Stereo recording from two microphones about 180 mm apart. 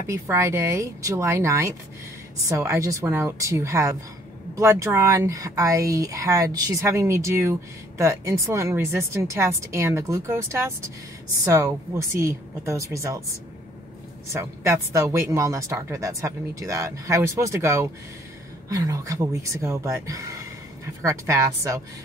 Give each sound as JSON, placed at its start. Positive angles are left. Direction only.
{"t": 0.1, "sound": "speech", "side_deg": -15}
{"t": 14.3, "sound": "speech", "side_deg": -15}